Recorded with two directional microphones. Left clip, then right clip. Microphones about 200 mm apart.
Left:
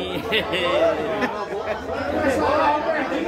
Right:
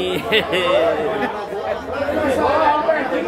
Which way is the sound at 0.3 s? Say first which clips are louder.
Right 4 dB; 30° right (ahead or behind).